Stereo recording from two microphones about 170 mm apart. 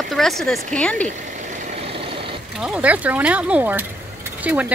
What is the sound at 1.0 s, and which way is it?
Vehicle, 45° right (ahead or behind).